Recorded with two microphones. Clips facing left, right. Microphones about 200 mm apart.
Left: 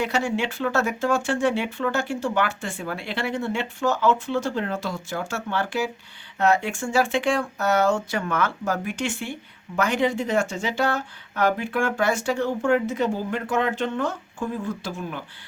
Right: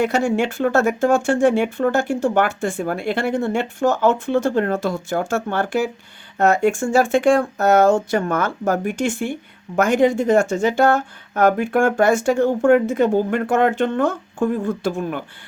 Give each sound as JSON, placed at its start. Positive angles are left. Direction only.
{"t": 0.0, "sound": "speech", "side_deg": -50}